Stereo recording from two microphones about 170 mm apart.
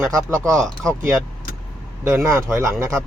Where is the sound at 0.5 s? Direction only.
5° left (ahead or behind).